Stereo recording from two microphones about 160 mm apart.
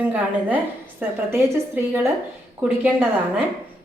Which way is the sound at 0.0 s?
10° right (ahead or behind).